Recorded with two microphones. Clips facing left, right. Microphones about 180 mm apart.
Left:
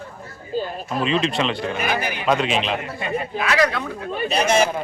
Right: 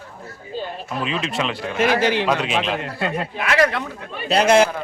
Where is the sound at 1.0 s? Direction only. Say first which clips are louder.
Left 4 dB; 5° right (ahead or behind).